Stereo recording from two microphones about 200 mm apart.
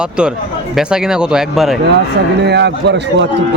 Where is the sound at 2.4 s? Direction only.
60° right (ahead or behind).